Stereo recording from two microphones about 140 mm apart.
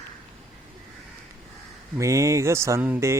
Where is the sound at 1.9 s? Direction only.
20° right (ahead or behind).